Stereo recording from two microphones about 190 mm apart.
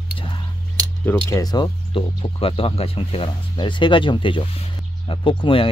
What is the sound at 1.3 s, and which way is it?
Speech, 20° left (ahead or behind).